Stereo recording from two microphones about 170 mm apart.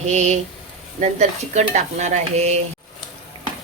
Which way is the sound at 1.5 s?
45° right (ahead or behind).